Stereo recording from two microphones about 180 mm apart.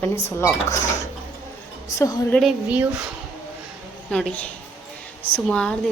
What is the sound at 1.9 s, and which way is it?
Speech, 15° left (ahead or behind).